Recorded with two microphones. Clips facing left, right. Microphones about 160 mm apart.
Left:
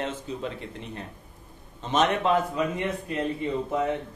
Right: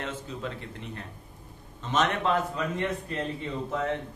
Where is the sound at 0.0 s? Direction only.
20° left (ahead or behind).